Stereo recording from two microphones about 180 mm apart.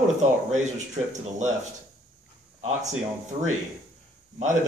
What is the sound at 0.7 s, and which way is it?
Speech, 40° right (ahead or behind).